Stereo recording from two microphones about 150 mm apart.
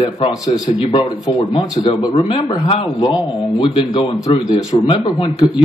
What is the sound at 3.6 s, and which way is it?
A man's voice, 35° left (ahead or behind).